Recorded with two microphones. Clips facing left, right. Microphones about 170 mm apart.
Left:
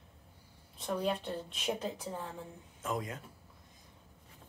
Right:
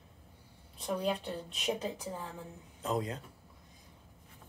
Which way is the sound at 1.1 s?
Centre (ahead or behind).